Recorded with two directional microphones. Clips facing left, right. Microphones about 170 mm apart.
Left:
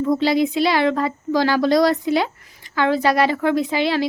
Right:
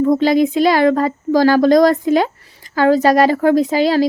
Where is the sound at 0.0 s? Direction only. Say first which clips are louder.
Right 5 dB; 50° right (ahead or behind).